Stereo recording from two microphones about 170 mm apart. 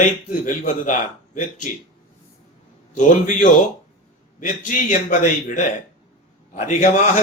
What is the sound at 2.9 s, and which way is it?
A man's voice, 45° left (ahead or behind).